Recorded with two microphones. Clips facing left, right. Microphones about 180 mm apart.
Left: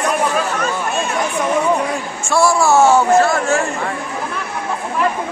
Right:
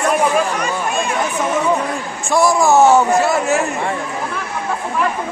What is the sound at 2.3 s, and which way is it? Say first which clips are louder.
Speech: right 1 dB; 15° right (ahead or behind).